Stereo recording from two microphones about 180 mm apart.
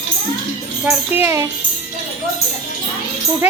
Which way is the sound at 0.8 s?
10° right (ahead or behind).